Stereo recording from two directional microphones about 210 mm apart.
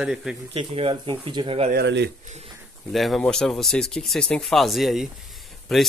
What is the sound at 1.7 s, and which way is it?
Speech, 55° right (ahead or behind).